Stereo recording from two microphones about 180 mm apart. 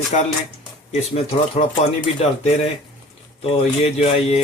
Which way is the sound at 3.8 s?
35° left (ahead or behind).